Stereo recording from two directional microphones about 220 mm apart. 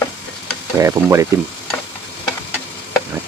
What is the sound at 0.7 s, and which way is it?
Speech, 15° right (ahead or behind).